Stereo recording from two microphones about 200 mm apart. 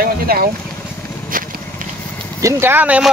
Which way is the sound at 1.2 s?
45° right (ahead or behind).